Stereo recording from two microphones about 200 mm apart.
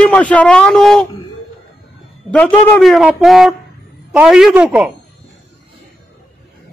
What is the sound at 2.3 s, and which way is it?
A man's voice, 5° left (ahead or behind).